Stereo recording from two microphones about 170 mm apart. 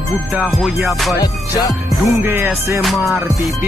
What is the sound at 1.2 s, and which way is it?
Music, 25° left (ahead or behind).